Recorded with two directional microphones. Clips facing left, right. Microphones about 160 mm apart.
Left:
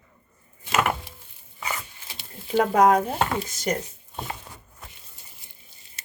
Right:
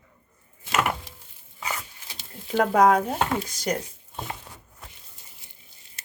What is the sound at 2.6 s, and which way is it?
Speech, 5° left (ahead or behind).